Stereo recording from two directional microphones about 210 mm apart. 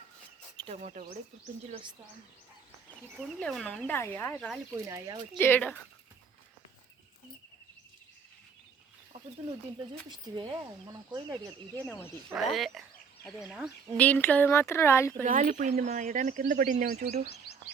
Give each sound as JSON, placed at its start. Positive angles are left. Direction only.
{"t": 0.5, "sound": "bird", "side_deg": -20}
{"t": 0.8, "sound": "speech", "side_deg": -35}
{"t": 3.2, "sound": "speech", "side_deg": 0}
{"t": 4.4, "sound": "speech", "side_deg": 0}
{"t": 4.9, "sound": "speech", "side_deg": -20}
{"t": 5.4, "sound": "speech", "side_deg": 10}
{"t": 9.9, "sound": "speech", "side_deg": -20}
{"t": 11.9, "sound": "speech", "side_deg": 10}
{"t": 12.3, "sound": "speech", "side_deg": 0}
{"t": 14.0, "sound": "speech", "side_deg": 5}
{"t": 15.2, "sound": "speech", "side_deg": -35}
{"t": 17.5, "sound": "frog", "side_deg": 50}